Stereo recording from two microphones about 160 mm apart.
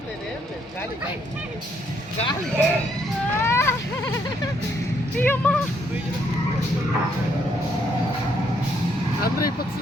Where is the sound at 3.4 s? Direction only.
15° left (ahead or behind).